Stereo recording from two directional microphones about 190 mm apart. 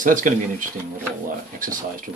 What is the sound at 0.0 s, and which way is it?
Speech, 45° right (ahead or behind).